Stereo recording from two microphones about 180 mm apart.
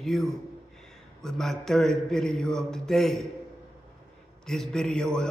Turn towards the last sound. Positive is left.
turn(degrees=5)  # may be behind; listen again after turning